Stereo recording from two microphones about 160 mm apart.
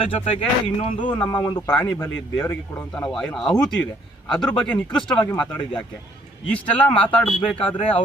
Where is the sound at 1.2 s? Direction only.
25° left (ahead or behind).